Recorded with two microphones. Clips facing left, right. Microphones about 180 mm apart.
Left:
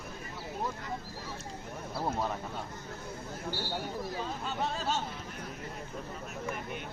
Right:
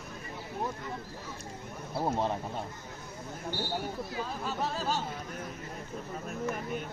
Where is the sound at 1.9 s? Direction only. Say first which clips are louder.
Right 3 dB; 25° right (ahead or behind).